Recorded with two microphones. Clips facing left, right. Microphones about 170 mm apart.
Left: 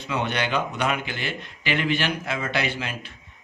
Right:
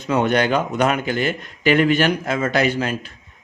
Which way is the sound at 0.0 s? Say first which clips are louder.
Right 8 dB; 45° right (ahead or behind).